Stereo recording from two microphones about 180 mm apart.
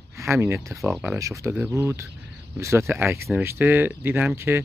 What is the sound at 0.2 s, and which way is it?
Speech, 15° right (ahead or behind).